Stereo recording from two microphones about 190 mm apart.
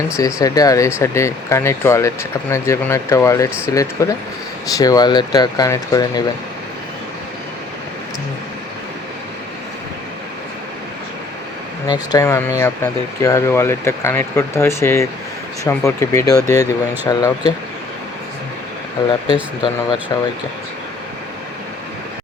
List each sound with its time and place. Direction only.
0.2 s speech: 15° left (ahead or behind)
11.9 s speech: 15° left (ahead or behind)
19.0 s speech: 25° left (ahead or behind)